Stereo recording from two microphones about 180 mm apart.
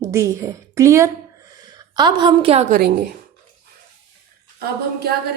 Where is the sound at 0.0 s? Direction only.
15° right (ahead or behind); by 2.7 s 35° right (ahead or behind).